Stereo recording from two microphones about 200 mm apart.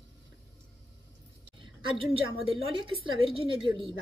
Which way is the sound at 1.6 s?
25° right (ahead or behind).